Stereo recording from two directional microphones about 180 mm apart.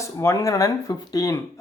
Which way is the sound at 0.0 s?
15° left (ahead or behind).